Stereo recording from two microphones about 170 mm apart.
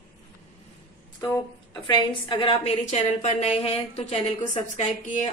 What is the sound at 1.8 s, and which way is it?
Speech, 25° left (ahead or behind).